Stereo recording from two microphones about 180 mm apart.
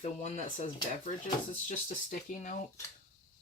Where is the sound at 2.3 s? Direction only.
45° left (ahead or behind).